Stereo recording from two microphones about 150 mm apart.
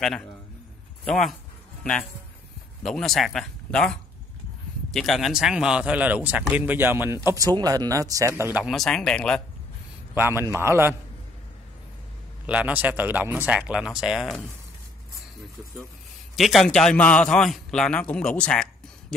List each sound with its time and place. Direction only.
1.0 s speech: centre (ahead or behind)
8.7 s speech: 5° left (ahead or behind)
10.1 s speech: 15° right (ahead or behind)
12.4 s speech: 10° right (ahead or behind)
16.3 s a man's voice: centre (ahead or behind)